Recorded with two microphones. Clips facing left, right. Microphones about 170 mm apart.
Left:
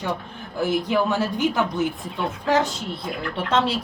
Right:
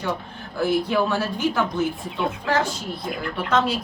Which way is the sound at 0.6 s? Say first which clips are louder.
Right 1 dB; 15° left (ahead or behind).